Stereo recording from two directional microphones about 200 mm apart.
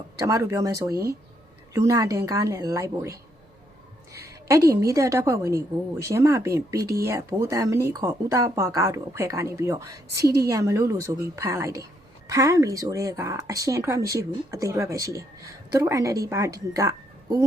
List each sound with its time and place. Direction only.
0.2 s speech: 15° right (ahead or behind)